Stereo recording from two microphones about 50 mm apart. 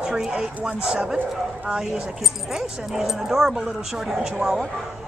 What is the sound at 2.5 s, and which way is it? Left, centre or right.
Speech, centre.